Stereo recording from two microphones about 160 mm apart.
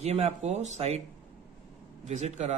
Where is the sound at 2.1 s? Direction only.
45° right (ahead or behind).